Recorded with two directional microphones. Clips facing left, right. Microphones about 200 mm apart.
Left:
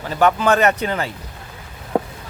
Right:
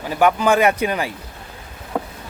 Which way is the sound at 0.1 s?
10° right (ahead or behind).